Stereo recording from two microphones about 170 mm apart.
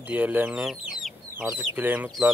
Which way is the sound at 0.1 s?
10° right (ahead or behind).